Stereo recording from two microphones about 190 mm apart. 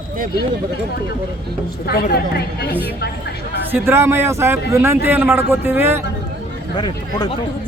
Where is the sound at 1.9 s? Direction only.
55° left (ahead or behind).